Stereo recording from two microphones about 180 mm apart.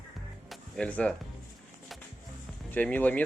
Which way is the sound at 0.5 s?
5° left (ahead or behind).